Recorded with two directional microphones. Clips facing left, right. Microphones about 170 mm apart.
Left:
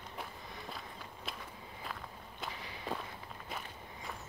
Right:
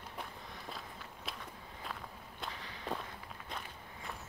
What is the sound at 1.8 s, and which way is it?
Walk, centre (ahead or behind).